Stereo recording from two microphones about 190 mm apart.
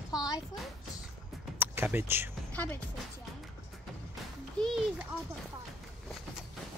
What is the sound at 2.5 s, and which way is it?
Speech, 10° left (ahead or behind).